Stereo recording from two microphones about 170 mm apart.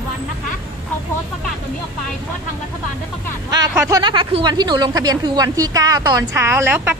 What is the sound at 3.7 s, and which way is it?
Speech, 20° right (ahead or behind).